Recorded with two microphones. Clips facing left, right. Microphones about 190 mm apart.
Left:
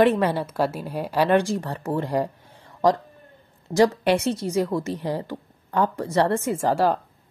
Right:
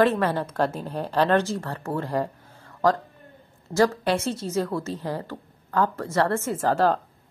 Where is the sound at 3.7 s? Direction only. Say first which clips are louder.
Left 3 dB; 20° left (ahead or behind).